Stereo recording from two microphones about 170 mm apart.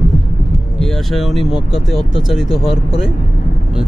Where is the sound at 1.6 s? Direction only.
35° left (ahead or behind).